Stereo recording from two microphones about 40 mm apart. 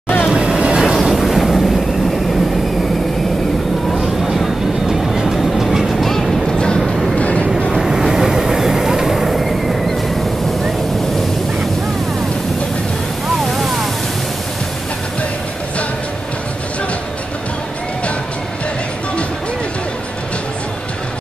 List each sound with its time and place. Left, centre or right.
0.3 s vehicle: right
1.1 s vehicle: centre
5.2 s vehicle: centre
6.0 s vehicle: centre
6.8 s vehicle: centre
7.2 s vehicle: left
7.7 s vehicle: centre
13.5 s waves: centre